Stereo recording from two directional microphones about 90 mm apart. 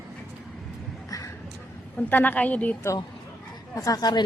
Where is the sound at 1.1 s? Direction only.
40° left (ahead or behind).